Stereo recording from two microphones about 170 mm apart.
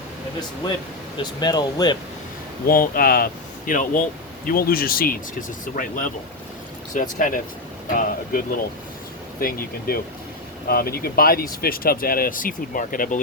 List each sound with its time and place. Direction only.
1.1 s speech: 25° left (ahead or behind)
2.6 s speech: 60° left (ahead or behind)